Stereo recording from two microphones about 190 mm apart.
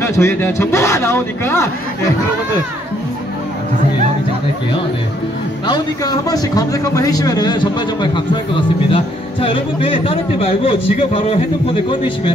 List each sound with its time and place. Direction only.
0.0 s a man's voice: 10° left (ahead or behind)
5.7 s speech: 20° left (ahead or behind)